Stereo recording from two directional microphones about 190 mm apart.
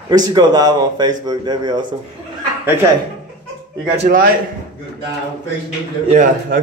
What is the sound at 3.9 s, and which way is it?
Speech, 35° right (ahead or behind).